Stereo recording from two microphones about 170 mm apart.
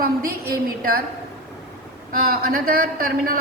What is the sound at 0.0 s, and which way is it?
Speech, 60° right (ahead or behind).